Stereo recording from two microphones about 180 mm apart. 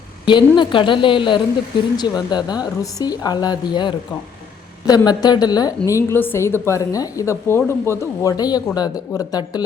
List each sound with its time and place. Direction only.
0.3 s a woman's voice: 25° left (ahead or behind)